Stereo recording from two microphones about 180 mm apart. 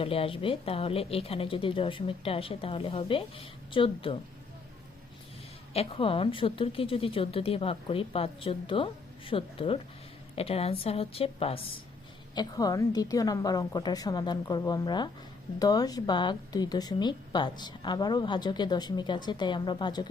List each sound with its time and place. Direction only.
0.0 s a woman's voice: 30° left (ahead or behind)
5.7 s a woman's voice: 30° left (ahead or behind)
12.3 s a woman's voice: 20° left (ahead or behind)